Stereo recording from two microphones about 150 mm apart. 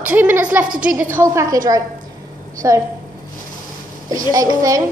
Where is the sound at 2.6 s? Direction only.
20° right (ahead or behind).